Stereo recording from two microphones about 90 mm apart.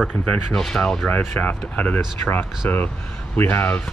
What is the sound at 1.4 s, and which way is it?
Speech, 20° left (ahead or behind).